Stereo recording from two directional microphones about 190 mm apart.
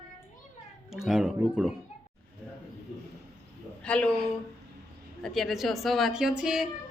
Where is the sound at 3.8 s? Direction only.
5° left (ahead or behind).